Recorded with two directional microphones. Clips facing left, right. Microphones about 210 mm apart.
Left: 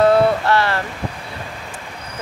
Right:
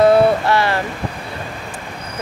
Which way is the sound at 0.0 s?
10° right (ahead or behind).